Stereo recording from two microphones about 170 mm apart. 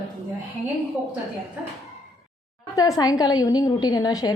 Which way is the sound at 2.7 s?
20° left (ahead or behind).